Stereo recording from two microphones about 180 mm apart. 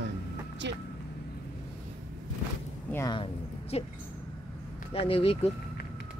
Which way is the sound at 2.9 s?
15° left (ahead or behind).